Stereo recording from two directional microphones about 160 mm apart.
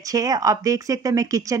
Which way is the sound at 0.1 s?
20° right (ahead or behind).